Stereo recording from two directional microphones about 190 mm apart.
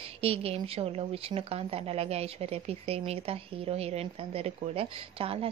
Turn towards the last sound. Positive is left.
turn(degrees=-30)  # may be behind; listen again after turning